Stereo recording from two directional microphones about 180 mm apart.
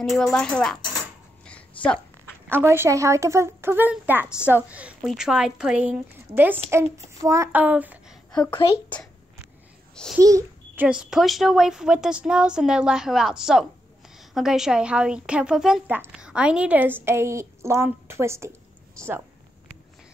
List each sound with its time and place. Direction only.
0.1 s a woman's voice: centre (ahead or behind)
1.4 s a sound: 5° left (ahead or behind)
2.5 s speech: 15° right (ahead or behind)
8.5 s a woman's voice: 30° left (ahead or behind)
8.8 s a child's voice: 10° left (ahead or behind)
10.2 s a child's voice: 20° right (ahead or behind)
10.9 s a woman's voice: 5° right (ahead or behind)